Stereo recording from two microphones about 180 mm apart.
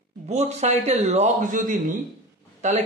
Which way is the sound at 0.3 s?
40° right (ahead or behind).